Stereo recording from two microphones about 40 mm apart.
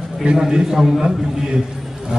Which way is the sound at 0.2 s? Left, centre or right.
Centre.